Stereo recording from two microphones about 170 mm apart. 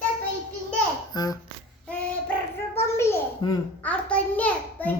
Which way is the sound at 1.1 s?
20° left (ahead or behind).